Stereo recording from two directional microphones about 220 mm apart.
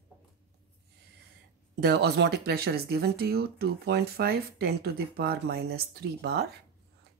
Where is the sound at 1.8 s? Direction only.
45° right (ahead or behind).